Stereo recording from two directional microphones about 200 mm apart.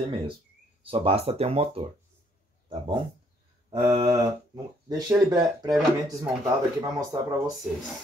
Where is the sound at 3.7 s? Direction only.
25° right (ahead or behind).